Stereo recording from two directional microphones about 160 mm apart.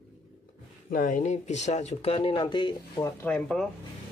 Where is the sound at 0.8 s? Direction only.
60° left (ahead or behind); by 3.1 s 30° left (ahead or behind).